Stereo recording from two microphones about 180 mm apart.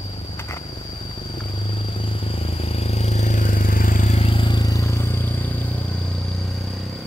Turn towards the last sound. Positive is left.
turn(degrees=10)  # may be behind; listen again after turning